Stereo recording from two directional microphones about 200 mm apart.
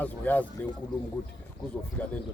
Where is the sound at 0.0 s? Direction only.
10° left (ahead or behind).